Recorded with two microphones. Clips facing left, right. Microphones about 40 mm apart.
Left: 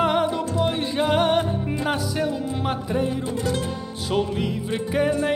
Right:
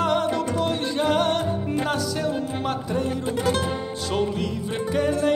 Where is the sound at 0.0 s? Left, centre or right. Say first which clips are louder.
Left 1 dB; centre.